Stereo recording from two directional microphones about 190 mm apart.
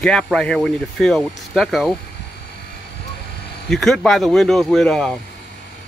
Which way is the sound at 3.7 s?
Centre (ahead or behind).